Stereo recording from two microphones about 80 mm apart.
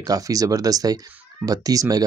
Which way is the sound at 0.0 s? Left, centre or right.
Right.